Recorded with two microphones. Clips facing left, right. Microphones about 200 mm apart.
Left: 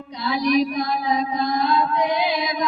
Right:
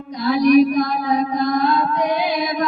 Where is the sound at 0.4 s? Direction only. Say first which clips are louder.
Right 7 dB; 55° right (ahead or behind).